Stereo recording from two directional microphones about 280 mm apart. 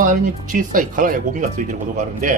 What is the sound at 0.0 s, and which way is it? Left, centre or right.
Speech, right.